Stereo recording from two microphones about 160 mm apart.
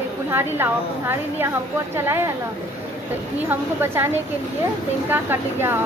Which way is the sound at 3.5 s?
15° right (ahead or behind).